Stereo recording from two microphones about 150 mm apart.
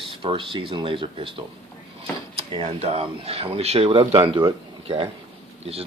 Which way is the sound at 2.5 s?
40° right (ahead or behind).